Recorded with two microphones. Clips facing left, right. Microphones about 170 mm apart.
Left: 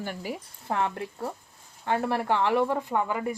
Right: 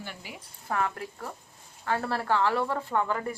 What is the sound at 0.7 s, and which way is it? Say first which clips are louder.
Speech: left 2 dB; 25° left (ahead or behind).